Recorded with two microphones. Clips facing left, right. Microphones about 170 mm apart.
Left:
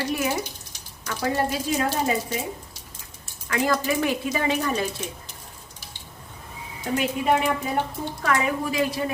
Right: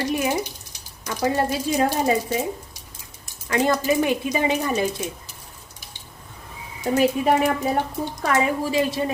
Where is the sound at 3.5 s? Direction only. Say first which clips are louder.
Right 3 dB; 20° right (ahead or behind).